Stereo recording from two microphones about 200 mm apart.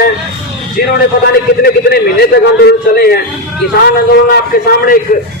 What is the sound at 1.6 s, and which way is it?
A man's voice, 50° left (ahead or behind).